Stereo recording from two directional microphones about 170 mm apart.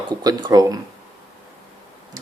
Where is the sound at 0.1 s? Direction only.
25° right (ahead or behind).